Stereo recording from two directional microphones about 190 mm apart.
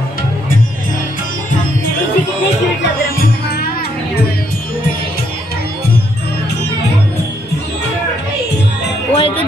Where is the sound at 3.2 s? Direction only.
55° left (ahead or behind).